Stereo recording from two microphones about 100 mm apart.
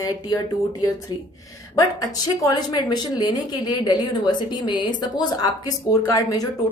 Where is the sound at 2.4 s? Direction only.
40° left (ahead or behind).